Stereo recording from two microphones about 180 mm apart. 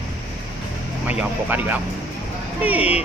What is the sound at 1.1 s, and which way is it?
Speech, 10° right (ahead or behind).